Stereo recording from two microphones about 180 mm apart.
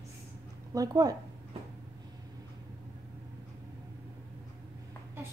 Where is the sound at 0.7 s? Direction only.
20° right (ahead or behind).